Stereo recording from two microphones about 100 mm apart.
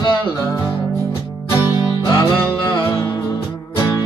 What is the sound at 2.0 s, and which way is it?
Music, 50° left (ahead or behind).